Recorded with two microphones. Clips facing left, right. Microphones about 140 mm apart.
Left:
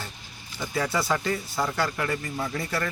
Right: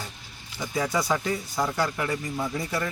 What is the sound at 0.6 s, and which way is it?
A man's voice, 10° right (ahead or behind).